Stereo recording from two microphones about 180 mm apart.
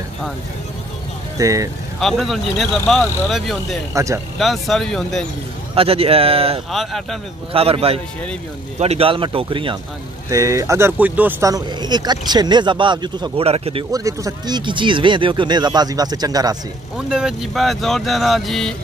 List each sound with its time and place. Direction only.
1.4 s speech: 20° right (ahead or behind)
2.0 s speech: centre (ahead or behind)
3.9 s speech: 15° right (ahead or behind)
4.4 s speech: centre (ahead or behind)
5.8 s speech: 30° right (ahead or behind)
6.7 s speech: centre (ahead or behind)
7.5 s speech: 30° right (ahead or behind)
10.3 s speech: 15° right (ahead or behind); by 13.8 s 35° right (ahead or behind)
13.9 s speech: 20° right (ahead or behind)
16.9 s speech: 5° right (ahead or behind)